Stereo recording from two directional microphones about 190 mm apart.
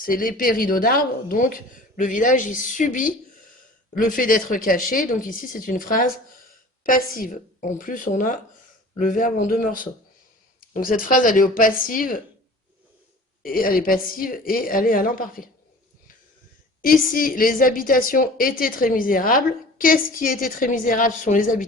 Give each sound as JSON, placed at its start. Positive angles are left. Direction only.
{"t": 0.0, "sound": "speech", "side_deg": 50}
{"t": 13.4, "sound": "speech", "side_deg": 50}
{"t": 16.8, "sound": "speech", "side_deg": 45}